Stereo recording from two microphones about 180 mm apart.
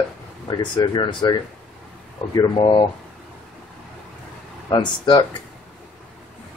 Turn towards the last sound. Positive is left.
turn(degrees=25)  # may be behind; listen again after turning